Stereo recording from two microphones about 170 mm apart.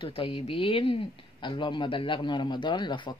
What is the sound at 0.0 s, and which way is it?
Speech, 30° left (ahead or behind).